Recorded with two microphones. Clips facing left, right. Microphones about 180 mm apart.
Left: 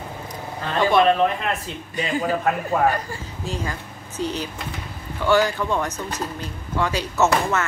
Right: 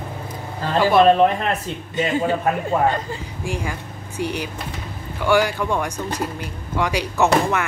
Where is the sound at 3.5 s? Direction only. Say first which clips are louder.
Right 2 dB; 15° right (ahead or behind).